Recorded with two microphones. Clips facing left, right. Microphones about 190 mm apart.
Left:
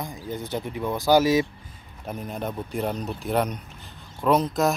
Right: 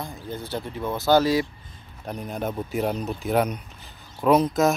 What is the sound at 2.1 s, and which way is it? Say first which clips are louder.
Speech: right 1 dB; centre (ahead or behind).